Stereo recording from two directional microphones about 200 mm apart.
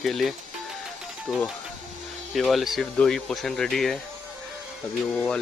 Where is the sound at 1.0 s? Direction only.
5° right (ahead or behind).